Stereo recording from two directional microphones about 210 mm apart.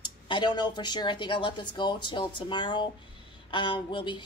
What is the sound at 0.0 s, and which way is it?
Speech, 20° left (ahead or behind).